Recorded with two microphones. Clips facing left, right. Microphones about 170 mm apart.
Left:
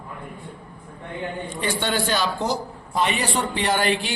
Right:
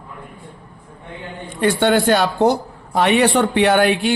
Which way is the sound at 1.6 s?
60° right (ahead or behind).